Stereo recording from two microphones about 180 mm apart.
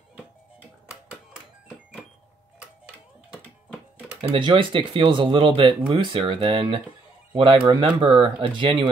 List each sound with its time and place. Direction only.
0.8 s music: 5° right (ahead or behind)
3.3 s music: 5° right (ahead or behind)
4.2 s speech: 25° right (ahead or behind)